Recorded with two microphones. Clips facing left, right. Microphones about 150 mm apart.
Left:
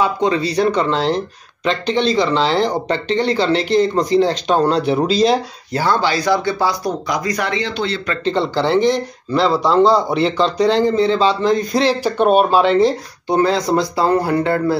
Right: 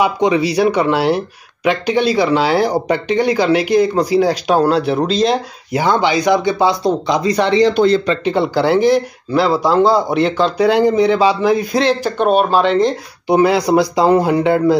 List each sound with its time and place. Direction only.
0.0 s speech: 15° right (ahead or behind)
5.7 s speech: 15° right (ahead or behind)
7.6 s speech: 45° right (ahead or behind)
8.2 s speech: 10° right (ahead or behind); by 12.9 s 5° left (ahead or behind)
13.3 s speech: 10° right (ahead or behind)